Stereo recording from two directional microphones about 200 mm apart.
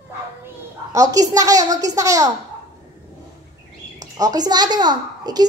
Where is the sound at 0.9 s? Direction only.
15° right (ahead or behind).